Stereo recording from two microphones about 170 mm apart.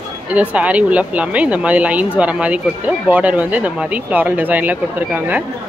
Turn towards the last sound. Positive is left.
turn(degrees=-10)  # may be behind; listen again after turning